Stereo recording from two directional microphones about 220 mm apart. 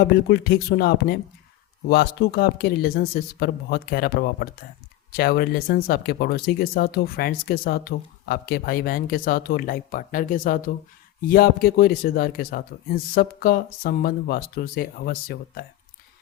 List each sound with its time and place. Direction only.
0.0 s speech: 45° left (ahead or behind)